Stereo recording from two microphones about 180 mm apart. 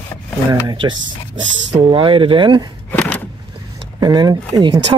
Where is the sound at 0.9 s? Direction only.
90° right.